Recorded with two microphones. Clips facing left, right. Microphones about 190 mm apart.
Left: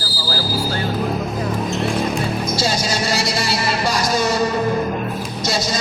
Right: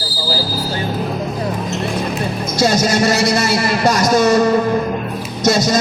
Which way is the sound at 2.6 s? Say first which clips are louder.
Right 11 dB; 50° right (ahead or behind).